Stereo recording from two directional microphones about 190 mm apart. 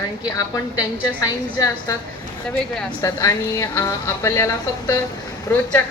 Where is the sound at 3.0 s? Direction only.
15° left (ahead or behind).